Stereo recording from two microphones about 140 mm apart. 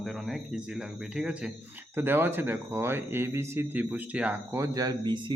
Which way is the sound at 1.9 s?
15° right (ahead or behind).